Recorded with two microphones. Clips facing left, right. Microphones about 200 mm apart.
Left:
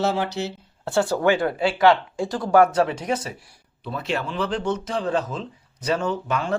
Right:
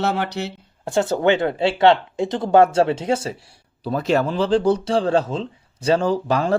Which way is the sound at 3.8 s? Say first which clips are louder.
Right 8 dB; 40° right (ahead or behind).